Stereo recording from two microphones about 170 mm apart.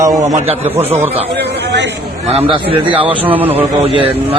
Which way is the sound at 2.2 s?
35° right (ahead or behind).